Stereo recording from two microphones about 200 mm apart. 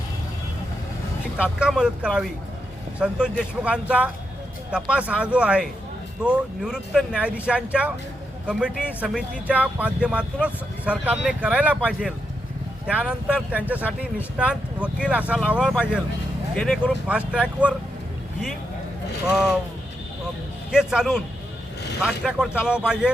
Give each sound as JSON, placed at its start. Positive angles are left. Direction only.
{"t": 1.4, "sound": "speech", "side_deg": -5}
{"t": 16.6, "sound": "speech", "side_deg": 5}
{"t": 17.1, "sound": "speech", "side_deg": -5}
{"t": 20.7, "sound": "speech", "side_deg": -5}